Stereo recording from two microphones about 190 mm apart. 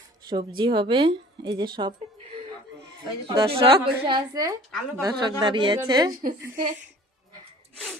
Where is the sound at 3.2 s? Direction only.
30° right (ahead or behind).